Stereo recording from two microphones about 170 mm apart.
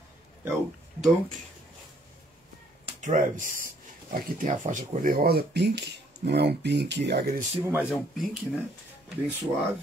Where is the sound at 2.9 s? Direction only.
45° right (ahead or behind); by 7.2 s 85° right.